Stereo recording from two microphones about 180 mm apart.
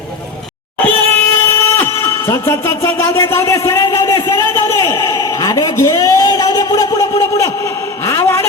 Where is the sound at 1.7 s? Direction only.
15° left (ahead or behind).